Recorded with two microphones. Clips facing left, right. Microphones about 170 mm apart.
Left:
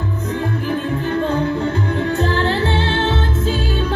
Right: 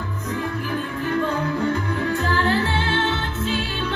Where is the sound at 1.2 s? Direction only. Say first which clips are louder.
Left 4 dB; 30° left (ahead or behind).